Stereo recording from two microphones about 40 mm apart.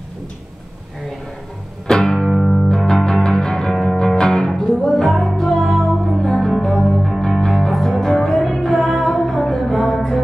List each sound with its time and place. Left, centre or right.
1.9 s music: centre
2.2 s music: centre
2.9 s music: centre
6.1 s music: centre
7.2 s music: centre
7.5 s music: centre